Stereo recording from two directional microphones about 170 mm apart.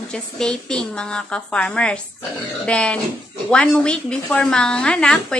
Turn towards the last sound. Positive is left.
turn(degrees=5)  # may be behind; listen again after turning